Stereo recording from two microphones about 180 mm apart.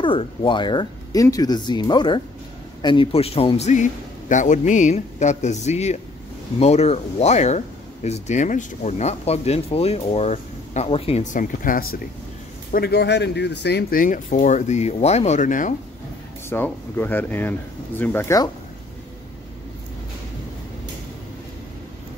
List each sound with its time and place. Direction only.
0.0 s speech: 30° left (ahead or behind); by 15.7 s 45° left (ahead or behind)
16.4 s speech: 10° left (ahead or behind)